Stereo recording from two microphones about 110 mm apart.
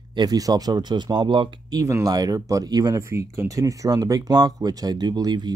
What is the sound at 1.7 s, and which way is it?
Speech, 30° right (ahead or behind).